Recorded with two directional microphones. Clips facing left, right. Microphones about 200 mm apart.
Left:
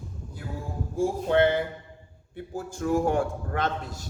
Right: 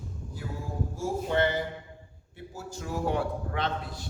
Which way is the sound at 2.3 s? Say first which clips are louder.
Left 5 dB; 55° left (ahead or behind).